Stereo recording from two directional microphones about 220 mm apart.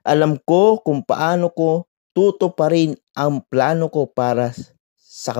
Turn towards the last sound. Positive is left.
turn(degrees=30)  # may be behind; listen again after turning